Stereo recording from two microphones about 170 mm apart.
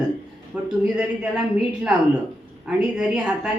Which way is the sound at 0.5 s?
5° right (ahead or behind).